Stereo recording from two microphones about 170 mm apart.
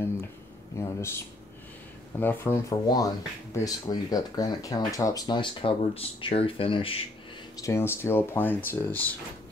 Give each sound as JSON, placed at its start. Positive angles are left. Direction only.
{"t": 0.7, "sound": "speech", "side_deg": 15}
{"t": 7.6, "sound": "speech", "side_deg": 15}